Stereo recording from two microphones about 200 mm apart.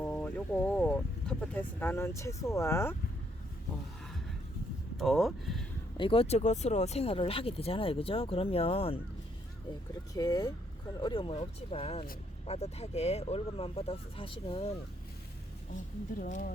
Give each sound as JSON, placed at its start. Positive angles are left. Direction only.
{"t": 0.0, "sound": "speech", "side_deg": 5}
{"t": 4.9, "sound": "speech", "side_deg": 0}
{"t": 6.0, "sound": "speech", "side_deg": 25}
{"t": 10.2, "sound": "speech", "side_deg": 20}
{"t": 16.2, "sound": "speech", "side_deg": 45}